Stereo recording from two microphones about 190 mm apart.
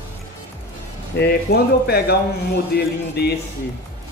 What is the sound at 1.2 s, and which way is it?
Speech, 55° left (ahead or behind).